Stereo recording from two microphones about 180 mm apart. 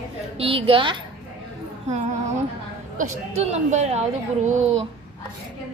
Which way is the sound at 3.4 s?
40° right (ahead or behind).